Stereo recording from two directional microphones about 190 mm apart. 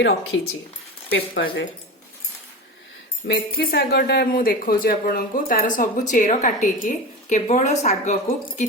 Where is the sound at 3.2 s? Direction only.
60° left (ahead or behind).